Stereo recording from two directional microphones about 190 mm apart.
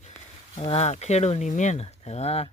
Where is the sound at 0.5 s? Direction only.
30° left (ahead or behind).